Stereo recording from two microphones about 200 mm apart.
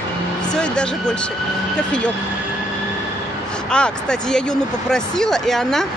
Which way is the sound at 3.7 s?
5° left (ahead or behind).